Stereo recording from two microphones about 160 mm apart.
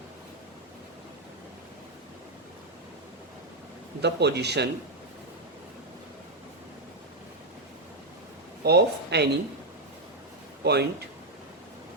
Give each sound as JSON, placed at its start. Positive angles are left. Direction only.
{"t": 4.0, "sound": "speech", "side_deg": -90}
{"t": 8.6, "sound": "speech", "side_deg": -90}
{"t": 10.6, "sound": "speech", "side_deg": -90}